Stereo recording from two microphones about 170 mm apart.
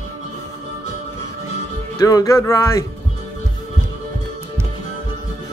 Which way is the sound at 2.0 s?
20° left (ahead or behind).